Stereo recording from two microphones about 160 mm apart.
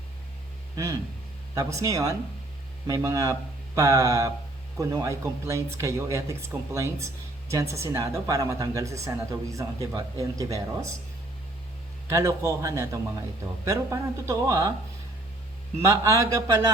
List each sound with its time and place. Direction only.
1.5 s speech: 20° right (ahead or behind)
12.0 s speech: 20° right (ahead or behind)
15.8 s speech: 20° right (ahead or behind)